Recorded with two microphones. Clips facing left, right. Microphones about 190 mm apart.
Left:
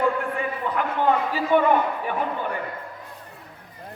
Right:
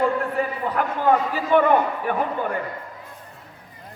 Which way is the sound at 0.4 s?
40° right (ahead or behind).